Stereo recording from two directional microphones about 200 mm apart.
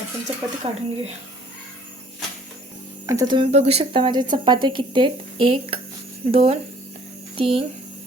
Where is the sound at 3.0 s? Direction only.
15° right (ahead or behind).